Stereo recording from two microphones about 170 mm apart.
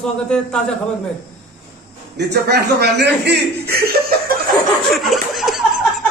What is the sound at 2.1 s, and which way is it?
A man's voice, 75° right (ahead or behind).